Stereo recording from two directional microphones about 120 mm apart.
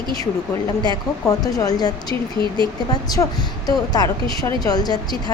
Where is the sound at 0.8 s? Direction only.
30° left (ahead or behind).